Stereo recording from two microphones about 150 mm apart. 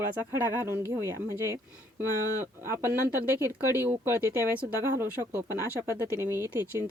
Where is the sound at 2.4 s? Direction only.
15° right (ahead or behind).